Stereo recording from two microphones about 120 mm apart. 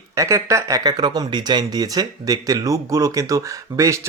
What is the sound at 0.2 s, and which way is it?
Speech, 25° right (ahead or behind).